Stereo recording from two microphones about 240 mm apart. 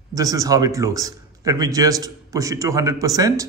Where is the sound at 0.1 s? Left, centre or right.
Centre.